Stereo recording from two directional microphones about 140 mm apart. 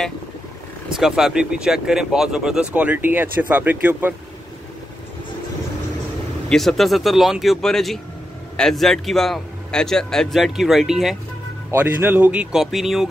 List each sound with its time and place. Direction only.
0.9 s speech: 5° right (ahead or behind)
6.5 s speech: centre (ahead or behind)
11.7 s speech: 15° right (ahead or behind)